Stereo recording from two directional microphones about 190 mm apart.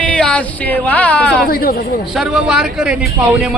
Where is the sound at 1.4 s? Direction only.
50° left (ahead or behind).